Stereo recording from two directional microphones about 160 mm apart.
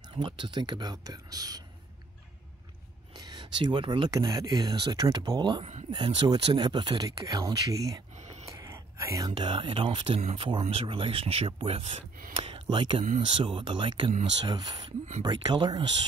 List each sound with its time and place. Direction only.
0.2 s speech: 30° right (ahead or behind)
3.2 s speech: 25° right (ahead or behind)
12.4 s a sound: 30° right (ahead or behind)
13.2 s speech: 30° right (ahead or behind)